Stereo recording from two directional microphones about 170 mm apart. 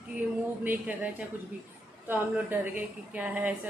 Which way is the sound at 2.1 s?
10° right (ahead or behind).